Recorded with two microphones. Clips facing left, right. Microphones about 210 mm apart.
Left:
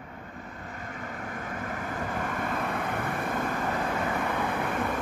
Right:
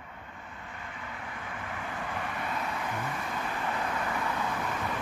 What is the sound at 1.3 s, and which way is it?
Vehicle, 45° left (ahead or behind).